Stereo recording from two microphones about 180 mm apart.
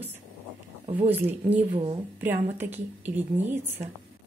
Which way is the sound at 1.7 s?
35° right (ahead or behind).